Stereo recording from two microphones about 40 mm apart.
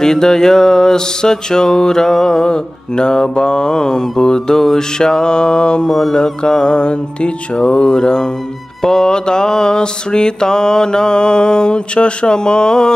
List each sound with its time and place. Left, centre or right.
0.0 s music: centre
4.7 s mantra: centre
5.9 s music: centre
6.1 s mantra: centre